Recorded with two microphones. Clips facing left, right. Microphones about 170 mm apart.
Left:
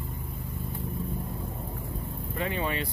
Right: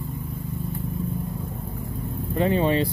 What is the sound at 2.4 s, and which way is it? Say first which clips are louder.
Speech: right 10 dB; 30° right (ahead or behind).